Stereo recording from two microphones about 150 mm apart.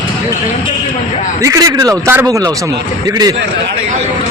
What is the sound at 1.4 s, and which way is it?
Speech, 20° right (ahead or behind).